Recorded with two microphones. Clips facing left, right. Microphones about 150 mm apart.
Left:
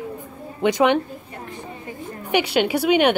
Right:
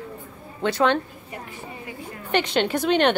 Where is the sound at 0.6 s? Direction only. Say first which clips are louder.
Left 3 dB; 15° left (ahead or behind).